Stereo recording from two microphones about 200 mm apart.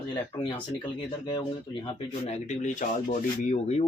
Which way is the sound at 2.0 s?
35° left (ahead or behind).